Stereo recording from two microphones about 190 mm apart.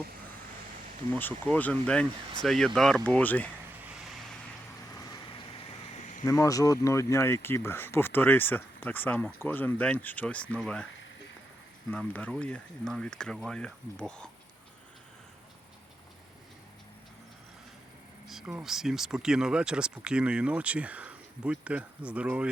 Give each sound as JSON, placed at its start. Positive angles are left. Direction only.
{"t": 1.1, "sound": "speech", "side_deg": 10}
{"t": 3.8, "sound": "vehicle", "side_deg": 0}
{"t": 5.9, "sound": "a sound", "side_deg": 40}
{"t": 6.2, "sound": "speech", "side_deg": 15}
{"t": 11.9, "sound": "speech", "side_deg": 10}
{"t": 18.3, "sound": "speech", "side_deg": -5}